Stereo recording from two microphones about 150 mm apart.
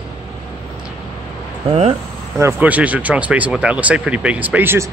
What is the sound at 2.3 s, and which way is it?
Speech, 15° right (ahead or behind).